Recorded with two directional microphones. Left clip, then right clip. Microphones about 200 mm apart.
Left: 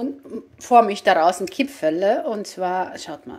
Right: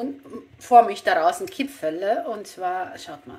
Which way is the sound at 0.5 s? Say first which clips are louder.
Even; 35° left (ahead or behind).